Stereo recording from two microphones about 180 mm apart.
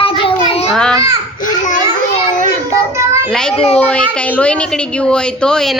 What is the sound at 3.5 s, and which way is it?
Speech, 35° left (ahead or behind).